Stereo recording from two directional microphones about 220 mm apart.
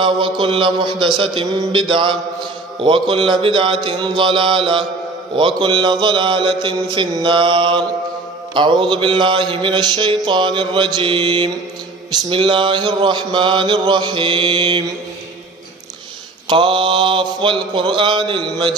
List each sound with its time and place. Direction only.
0.0 s mantra: 25° right (ahead or behind)
16.4 s mantra: 25° right (ahead or behind)